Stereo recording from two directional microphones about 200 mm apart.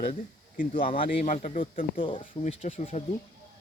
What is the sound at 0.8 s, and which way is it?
Speech, 25° left (ahead or behind).